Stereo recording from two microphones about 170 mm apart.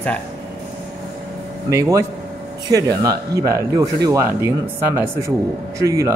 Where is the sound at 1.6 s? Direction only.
15° right (ahead or behind).